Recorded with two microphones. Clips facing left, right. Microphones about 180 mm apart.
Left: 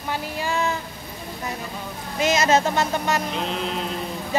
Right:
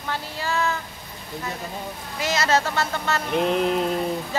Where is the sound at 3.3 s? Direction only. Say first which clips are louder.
Right 6 dB; 55° right (ahead or behind).